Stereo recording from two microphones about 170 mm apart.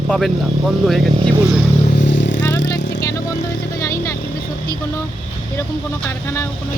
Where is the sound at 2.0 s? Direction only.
90° left.